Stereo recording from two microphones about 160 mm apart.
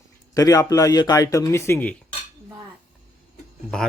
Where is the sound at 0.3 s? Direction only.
20° left (ahead or behind).